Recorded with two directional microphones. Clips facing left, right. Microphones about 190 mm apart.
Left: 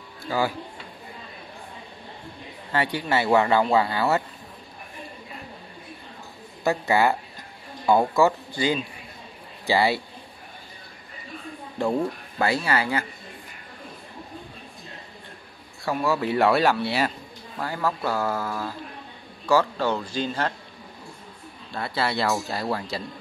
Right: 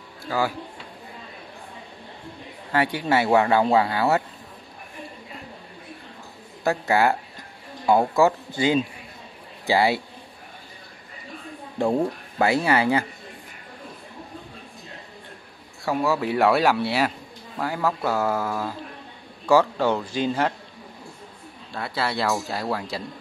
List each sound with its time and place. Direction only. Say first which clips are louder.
0.3 s speech: even; centre (ahead or behind)
2.7 s speech: right 3 dB; 15° right (ahead or behind)
6.6 s speech: even; 5° right (ahead or behind)
9.7 s speech: right 1 dB; 15° right (ahead or behind)
12.4 s speech: right 4 dB; 20° right (ahead or behind)
15.9 s speech: right 1 dB; 10° right (ahead or behind)
21.7 s speech: left 1 dB; 5° right (ahead or behind)